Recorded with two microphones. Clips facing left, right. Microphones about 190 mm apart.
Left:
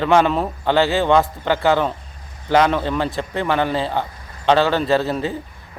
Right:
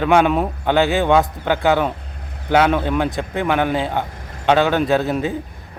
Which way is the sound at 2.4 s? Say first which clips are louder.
Right 1 dB; 10° right (ahead or behind).